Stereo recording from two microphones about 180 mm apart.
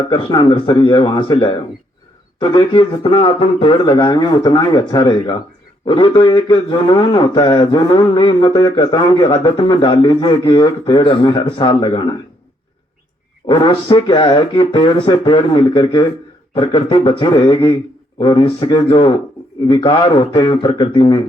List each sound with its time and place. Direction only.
0.0 s a man's voice: 25° left (ahead or behind)
13.5 s a man's voice: 25° left (ahead or behind)